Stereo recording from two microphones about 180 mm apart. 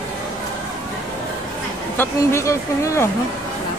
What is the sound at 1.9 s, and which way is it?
A woman's voice, 15° left (ahead or behind).